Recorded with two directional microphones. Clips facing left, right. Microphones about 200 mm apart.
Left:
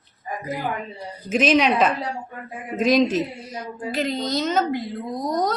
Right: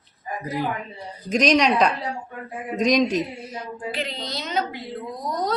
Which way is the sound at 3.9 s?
45° left (ahead or behind).